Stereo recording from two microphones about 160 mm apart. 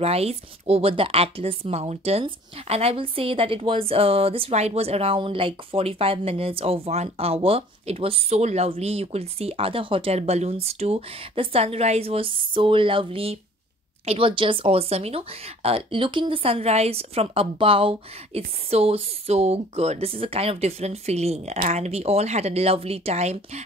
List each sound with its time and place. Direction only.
0.0 s speech: 40° right (ahead or behind)